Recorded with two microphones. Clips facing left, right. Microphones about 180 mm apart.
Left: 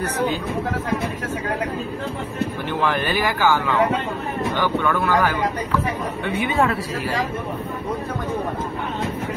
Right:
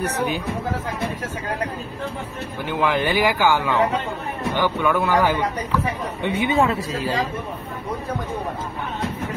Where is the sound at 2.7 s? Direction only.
10° right (ahead or behind).